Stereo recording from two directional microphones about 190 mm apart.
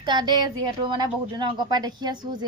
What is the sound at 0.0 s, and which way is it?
A woman's voice, 25° right (ahead or behind).